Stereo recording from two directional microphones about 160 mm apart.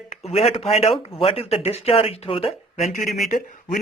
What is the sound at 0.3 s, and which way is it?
Speech, 40° left (ahead or behind).